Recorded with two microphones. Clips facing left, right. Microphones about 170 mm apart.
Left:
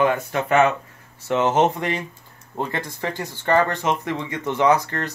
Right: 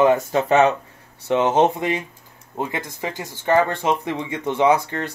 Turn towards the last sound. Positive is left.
turn(degrees=-10)  # may be behind; listen again after turning